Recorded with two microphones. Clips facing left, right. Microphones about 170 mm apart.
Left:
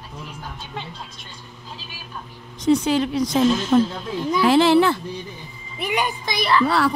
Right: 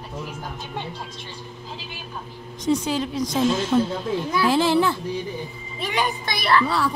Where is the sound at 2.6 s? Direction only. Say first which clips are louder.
Left 4 dB; 70° left (ahead or behind).